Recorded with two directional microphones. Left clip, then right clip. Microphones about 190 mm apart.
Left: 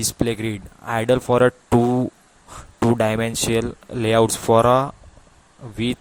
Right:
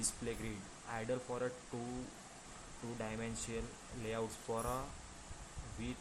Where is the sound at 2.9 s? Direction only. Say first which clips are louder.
Left 19 dB; 60° left (ahead or behind).